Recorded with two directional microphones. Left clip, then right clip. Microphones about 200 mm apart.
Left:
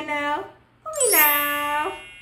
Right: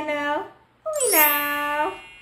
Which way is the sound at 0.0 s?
Centre (ahead or behind).